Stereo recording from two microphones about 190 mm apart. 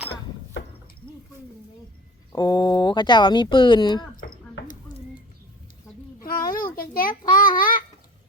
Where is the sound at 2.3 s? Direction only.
20° left (ahead or behind).